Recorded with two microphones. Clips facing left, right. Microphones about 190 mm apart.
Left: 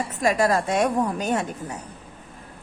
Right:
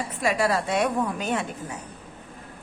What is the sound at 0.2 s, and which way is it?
A woman's voice, 45° left (ahead or behind).